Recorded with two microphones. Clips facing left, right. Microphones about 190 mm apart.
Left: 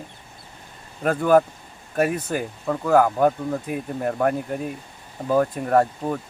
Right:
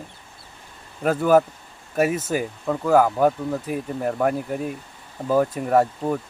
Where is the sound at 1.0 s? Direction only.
5° right (ahead or behind).